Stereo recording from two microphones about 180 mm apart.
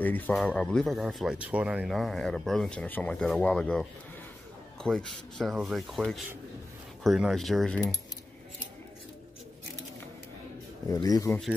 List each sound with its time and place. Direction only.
0.0 s speech: 5° left (ahead or behind)
4.8 s speech: centre (ahead or behind)
10.9 s speech: 20° left (ahead or behind)